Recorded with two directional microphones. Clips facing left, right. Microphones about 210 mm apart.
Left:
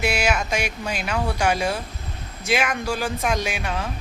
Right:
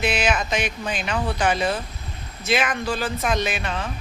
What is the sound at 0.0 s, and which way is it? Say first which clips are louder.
Speech: even; 10° left (ahead or behind).